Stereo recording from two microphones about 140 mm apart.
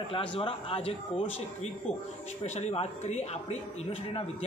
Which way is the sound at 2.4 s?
50° left (ahead or behind).